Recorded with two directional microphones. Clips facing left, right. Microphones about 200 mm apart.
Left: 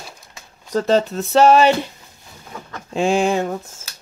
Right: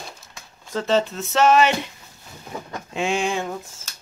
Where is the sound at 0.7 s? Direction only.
40° left (ahead or behind).